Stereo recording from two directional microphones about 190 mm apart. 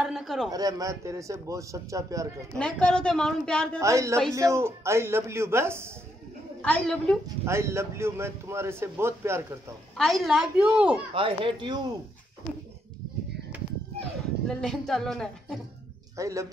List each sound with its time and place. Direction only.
0.0 s a sound: centre (ahead or behind)
0.5 s speech: 20° right (ahead or behind)
2.5 s a woman's voice: 5° left (ahead or behind)
3.8 s speech: 15° right (ahead or behind)
6.6 s a woman's voice: 5° left (ahead or behind)
7.2 s speech: 15° right (ahead or behind)
9.9 s a woman's voice: centre (ahead or behind)
11.1 s speech: 25° right (ahead or behind)
14.5 s a woman's voice: 5° left (ahead or behind)
16.2 s speech: 15° right (ahead or behind)